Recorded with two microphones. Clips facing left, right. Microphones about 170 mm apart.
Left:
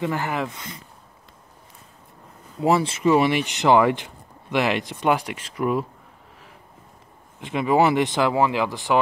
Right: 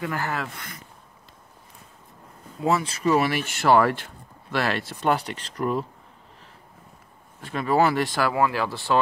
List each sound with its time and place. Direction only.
0.0 s speech: 20° left (ahead or behind)
2.6 s speech: 30° left (ahead or behind); by 5.9 s 10° left (ahead or behind)
7.4 s speech: 15° left (ahead or behind)